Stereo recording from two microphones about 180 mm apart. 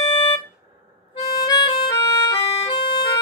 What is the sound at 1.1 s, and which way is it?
Harmonica, 20° left (ahead or behind).